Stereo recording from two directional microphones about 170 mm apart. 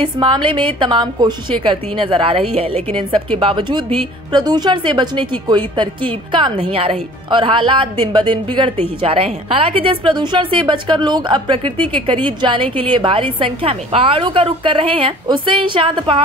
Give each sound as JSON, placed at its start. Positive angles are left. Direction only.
{"t": 0.0, "sound": "a woman's voice", "side_deg": -25}